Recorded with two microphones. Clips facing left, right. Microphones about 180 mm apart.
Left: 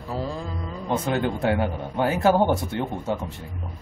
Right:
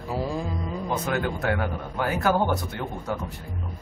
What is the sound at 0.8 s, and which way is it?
Speech, 25° left (ahead or behind).